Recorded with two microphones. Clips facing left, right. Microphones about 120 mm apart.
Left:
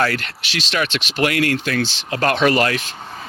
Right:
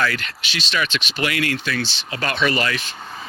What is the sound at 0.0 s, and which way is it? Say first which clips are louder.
Speech: left 3 dB; 60° left (ahead or behind).